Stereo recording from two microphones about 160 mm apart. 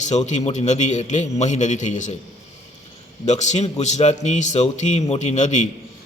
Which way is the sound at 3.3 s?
45° left (ahead or behind).